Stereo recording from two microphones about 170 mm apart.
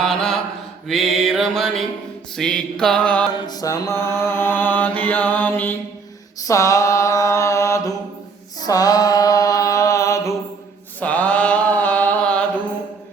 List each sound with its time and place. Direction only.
0.0 s mantra: 5° left (ahead or behind)
0.9 s music: centre (ahead or behind)
2.3 s mantra: 5° left (ahead or behind)
3.4 s mantra: 20° left (ahead or behind); by 12.5 s 5° left (ahead or behind)